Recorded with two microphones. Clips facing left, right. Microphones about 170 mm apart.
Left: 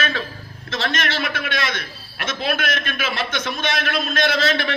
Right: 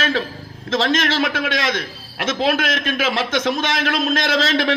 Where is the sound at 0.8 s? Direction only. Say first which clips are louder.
Right 5 dB; 60° left (ahead or behind).